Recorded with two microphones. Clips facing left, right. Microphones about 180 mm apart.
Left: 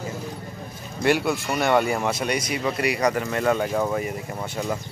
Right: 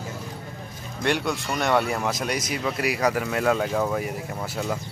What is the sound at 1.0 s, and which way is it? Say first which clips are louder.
Speech: left 4 dB; 5° left (ahead or behind).